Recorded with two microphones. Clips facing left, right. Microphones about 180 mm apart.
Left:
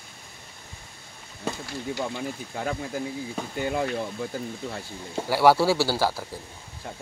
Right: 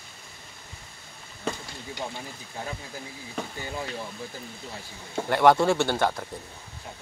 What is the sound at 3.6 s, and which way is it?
Speech, 65° left (ahead or behind).